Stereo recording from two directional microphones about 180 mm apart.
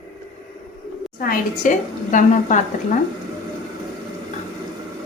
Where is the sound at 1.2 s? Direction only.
45° left (ahead or behind).